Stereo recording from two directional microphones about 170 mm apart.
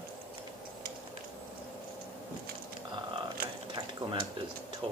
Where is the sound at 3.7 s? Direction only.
30° right (ahead or behind).